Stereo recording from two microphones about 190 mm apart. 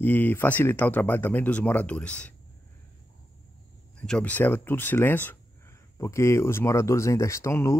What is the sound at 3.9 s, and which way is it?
Speech, 5° left (ahead or behind).